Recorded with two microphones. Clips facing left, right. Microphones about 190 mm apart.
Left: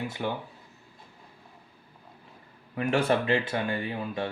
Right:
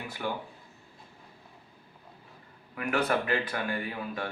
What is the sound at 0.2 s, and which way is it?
Speech, 25° left (ahead or behind).